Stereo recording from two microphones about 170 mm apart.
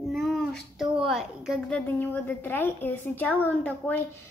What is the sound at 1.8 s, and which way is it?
A woman's voice, 10° left (ahead or behind).